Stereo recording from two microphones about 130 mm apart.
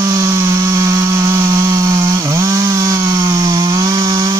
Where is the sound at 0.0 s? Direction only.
25° right (ahead or behind).